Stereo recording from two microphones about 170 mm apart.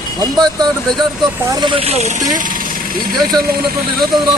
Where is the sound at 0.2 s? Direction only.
25° right (ahead or behind); by 2.6 s 50° right (ahead or behind).